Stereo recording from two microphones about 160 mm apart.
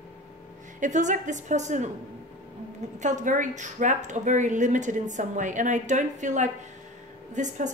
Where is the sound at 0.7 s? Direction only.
50° right (ahead or behind).